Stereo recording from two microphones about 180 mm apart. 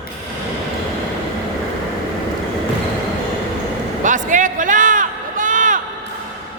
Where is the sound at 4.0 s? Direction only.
45° right (ahead or behind).